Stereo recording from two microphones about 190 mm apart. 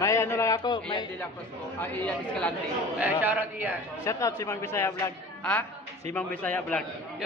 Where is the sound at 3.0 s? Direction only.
10° right (ahead or behind).